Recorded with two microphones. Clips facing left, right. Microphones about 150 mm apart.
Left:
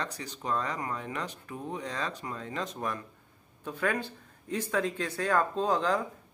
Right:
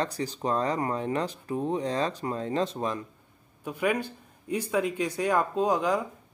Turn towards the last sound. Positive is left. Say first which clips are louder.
# right 3 dB
turn(degrees=-10)  # may be behind; listen again after turning